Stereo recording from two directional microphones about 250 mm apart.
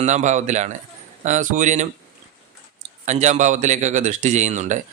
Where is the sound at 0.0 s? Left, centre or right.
Right.